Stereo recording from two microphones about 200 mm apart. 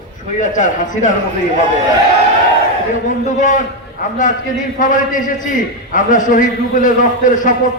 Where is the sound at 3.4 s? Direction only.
40° left (ahead or behind).